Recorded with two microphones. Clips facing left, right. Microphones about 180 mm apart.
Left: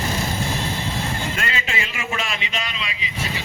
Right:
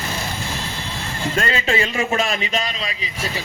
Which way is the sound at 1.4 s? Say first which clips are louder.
Right 7 dB; 35° right (ahead or behind).